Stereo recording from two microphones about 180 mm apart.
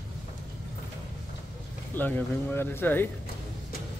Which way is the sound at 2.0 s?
10° left (ahead or behind).